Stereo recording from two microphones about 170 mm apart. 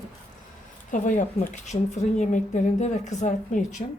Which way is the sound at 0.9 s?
50° left (ahead or behind).